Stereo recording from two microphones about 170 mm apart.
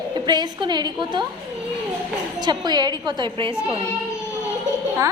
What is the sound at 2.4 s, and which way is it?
A woman's voice, 25° right (ahead or behind).